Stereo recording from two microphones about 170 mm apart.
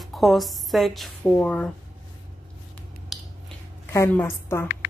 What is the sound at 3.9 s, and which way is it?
Speech, 15° left (ahead or behind).